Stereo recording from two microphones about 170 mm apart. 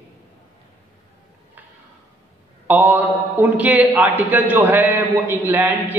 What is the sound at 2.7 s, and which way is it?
A man's voice, 10° right (ahead or behind).